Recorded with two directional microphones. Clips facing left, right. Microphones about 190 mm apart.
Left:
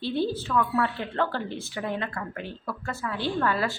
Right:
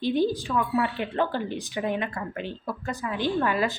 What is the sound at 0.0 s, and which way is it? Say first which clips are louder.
A woman's voice: right 3 dB; 15° right (ahead or behind).